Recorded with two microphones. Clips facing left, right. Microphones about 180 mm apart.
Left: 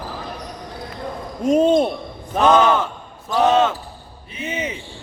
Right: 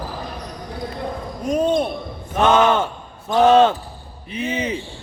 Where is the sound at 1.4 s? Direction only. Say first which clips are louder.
Left 4 dB; 25° left (ahead or behind).